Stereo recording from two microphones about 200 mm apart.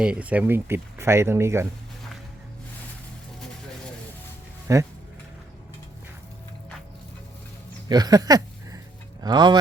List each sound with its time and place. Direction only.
0.0 s speech: 5° right (ahead or behind)
4.7 s speech: 15° right (ahead or behind)
7.9 s a sound: 20° right (ahead or behind)
9.2 s speech: 20° right (ahead or behind)